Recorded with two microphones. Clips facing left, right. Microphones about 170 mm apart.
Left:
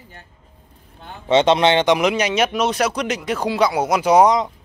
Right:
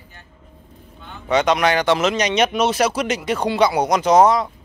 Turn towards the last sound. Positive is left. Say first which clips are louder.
# even
turn(degrees=15)  # may be behind; listen again after turning